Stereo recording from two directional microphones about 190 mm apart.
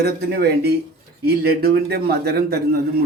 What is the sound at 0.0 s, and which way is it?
Speech, 55° right (ahead or behind).